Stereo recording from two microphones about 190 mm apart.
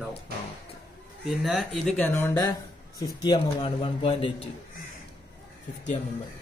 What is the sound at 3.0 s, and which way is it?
A man's voice, 25° left (ahead or behind).